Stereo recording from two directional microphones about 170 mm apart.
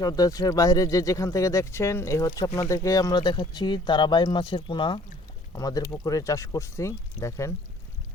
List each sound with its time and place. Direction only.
0.0 s speech: 20° left (ahead or behind)